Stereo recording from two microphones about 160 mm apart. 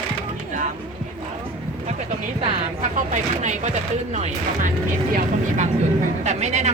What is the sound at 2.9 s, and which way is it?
Speech, 50° right (ahead or behind).